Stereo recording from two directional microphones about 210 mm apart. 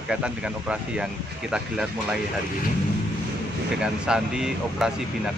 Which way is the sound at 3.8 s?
5° right (ahead or behind).